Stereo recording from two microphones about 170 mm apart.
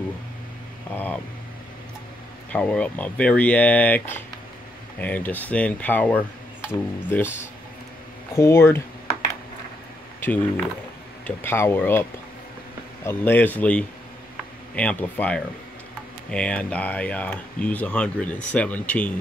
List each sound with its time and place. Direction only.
0.9 s speech: 10° left (ahead or behind)
2.5 s speech: 5° left (ahead or behind)
8.4 s speech: 15° left (ahead or behind)
11.2 s speech: 15° left (ahead or behind)